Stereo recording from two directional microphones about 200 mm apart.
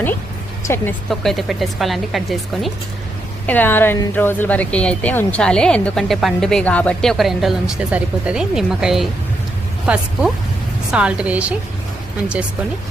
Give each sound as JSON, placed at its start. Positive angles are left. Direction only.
{"t": 0.6, "sound": "speech", "side_deg": 10}
{"t": 1.1, "sound": "a woman's voice", "side_deg": 0}